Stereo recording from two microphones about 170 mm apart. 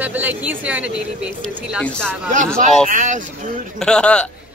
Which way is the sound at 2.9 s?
45° right (ahead or behind).